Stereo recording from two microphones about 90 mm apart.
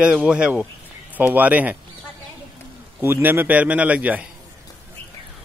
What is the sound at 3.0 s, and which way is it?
Speech, 25° right (ahead or behind).